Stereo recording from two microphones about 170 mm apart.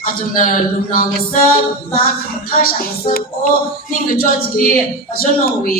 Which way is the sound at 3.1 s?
55° left (ahead or behind).